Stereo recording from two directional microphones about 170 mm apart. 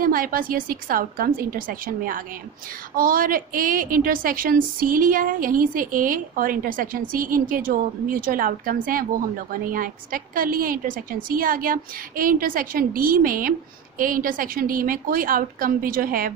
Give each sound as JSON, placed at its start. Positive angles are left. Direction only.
{"t": 0.0, "sound": "a woman's voice", "side_deg": -55}